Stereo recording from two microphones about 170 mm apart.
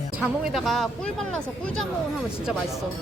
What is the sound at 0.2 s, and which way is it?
Speech, centre (ahead or behind).